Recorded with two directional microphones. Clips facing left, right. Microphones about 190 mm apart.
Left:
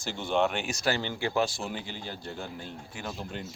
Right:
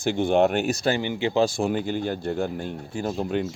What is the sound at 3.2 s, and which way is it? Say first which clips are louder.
Speech: right 13 dB; 70° right (ahead or behind).